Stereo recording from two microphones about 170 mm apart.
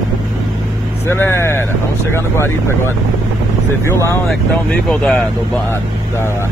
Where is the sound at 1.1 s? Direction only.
15° left (ahead or behind).